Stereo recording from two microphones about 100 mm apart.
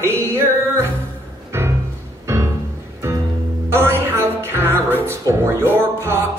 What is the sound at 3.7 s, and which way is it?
Music, 20° right (ahead or behind).